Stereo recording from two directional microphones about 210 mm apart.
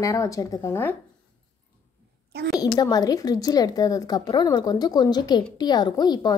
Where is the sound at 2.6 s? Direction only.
20° left (ahead or behind).